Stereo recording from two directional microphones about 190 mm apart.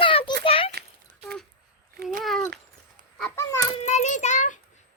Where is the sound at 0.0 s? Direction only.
25° left (ahead or behind).